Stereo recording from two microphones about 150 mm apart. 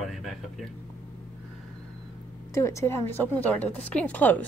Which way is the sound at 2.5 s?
20° left (ahead or behind).